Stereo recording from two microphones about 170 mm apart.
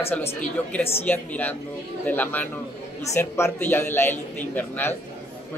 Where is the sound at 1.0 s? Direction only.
10° left (ahead or behind).